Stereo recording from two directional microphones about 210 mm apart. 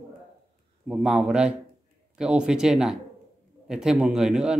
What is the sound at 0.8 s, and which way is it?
A man's voice, 5° right (ahead or behind).